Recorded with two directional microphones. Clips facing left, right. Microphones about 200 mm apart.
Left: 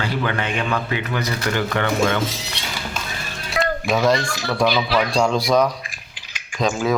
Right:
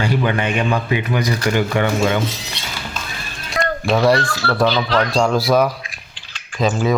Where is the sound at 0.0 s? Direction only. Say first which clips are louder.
Right 4 dB; 15° right (ahead or behind).